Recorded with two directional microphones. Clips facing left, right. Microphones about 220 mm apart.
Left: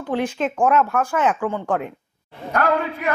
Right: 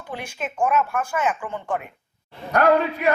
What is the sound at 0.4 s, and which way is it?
Speech, 90° left.